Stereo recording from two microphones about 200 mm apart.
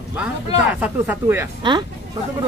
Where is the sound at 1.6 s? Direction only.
20° right (ahead or behind).